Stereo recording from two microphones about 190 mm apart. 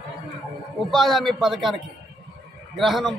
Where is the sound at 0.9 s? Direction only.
Centre (ahead or behind).